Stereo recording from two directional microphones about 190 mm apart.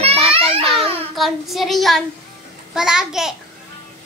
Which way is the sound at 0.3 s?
30° right (ahead or behind).